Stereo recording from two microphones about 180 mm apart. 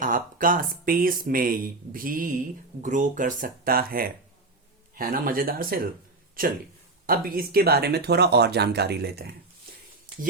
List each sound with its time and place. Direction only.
0.0 s speech: 50° right (ahead or behind)
7.1 s speech: 55° right (ahead or behind)
10.1 s a sound: 30° right (ahead or behind)